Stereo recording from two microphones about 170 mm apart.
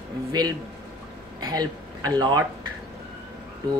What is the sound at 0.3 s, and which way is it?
Speech, 25° right (ahead or behind).